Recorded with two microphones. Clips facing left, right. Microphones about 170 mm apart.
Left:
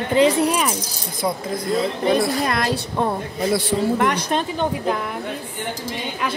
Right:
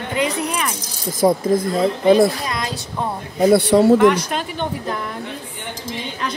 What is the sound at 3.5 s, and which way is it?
Speech, 65° right (ahead or behind).